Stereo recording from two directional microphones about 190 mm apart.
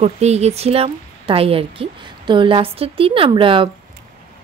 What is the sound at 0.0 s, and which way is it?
Speech, 35° right (ahead or behind).